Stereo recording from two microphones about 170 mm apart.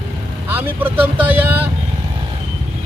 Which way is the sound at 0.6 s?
10° right (ahead or behind).